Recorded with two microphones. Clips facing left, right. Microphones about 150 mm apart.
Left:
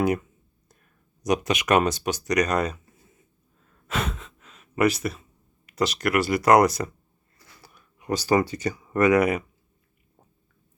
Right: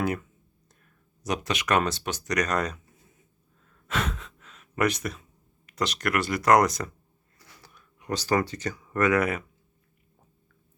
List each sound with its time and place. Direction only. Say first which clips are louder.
0.0 s speech: left 5 dB; 15° left (ahead or behind)
3.8 s gasp: left 1 dB; 5° left (ahead or behind)
5.6 s speech: left 4 dB; 5° left (ahead or behind)